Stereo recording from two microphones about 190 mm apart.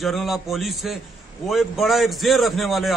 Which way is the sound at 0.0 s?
Centre (ahead or behind).